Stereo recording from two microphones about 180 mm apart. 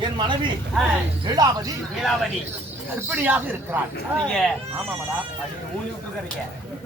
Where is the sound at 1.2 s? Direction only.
25° right (ahead or behind).